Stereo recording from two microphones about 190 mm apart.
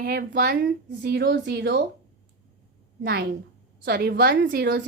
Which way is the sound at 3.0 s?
55° right (ahead or behind).